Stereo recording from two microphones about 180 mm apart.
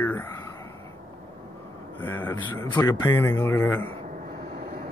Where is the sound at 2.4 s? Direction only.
25° left (ahead or behind).